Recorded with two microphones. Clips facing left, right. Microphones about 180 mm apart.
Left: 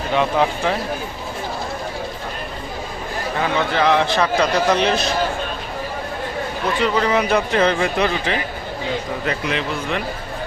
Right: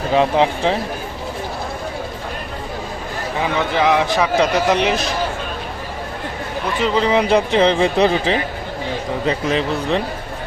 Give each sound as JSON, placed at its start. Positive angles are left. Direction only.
{"t": 0.1, "sound": "a man's voice", "side_deg": -30}
{"t": 3.8, "sound": "a man's voice", "side_deg": -10}
{"t": 6.8, "sound": "a man's voice", "side_deg": -25}
{"t": 9.5, "sound": "speech", "side_deg": -35}